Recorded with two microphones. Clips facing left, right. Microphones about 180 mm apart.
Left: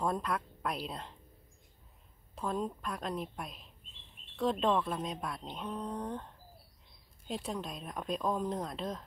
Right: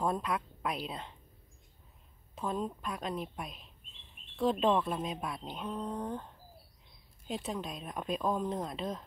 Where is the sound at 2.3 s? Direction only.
Centre (ahead or behind).